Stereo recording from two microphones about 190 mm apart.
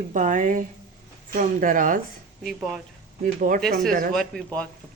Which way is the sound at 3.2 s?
45° right (ahead or behind).